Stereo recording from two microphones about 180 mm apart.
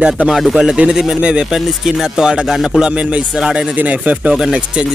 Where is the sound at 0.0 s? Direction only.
5° right (ahead or behind).